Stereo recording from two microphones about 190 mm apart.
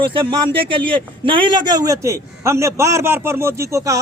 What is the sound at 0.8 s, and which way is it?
A man's voice, 25° right (ahead or behind).